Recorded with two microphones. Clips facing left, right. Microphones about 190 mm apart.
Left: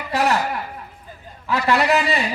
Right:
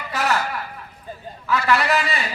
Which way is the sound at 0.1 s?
30° left (ahead or behind).